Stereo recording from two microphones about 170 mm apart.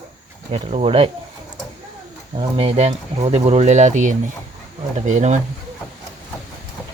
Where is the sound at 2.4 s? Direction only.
35° right (ahead or behind).